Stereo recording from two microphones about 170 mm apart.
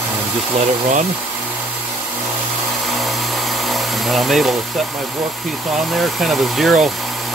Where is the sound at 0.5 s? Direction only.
35° right (ahead or behind).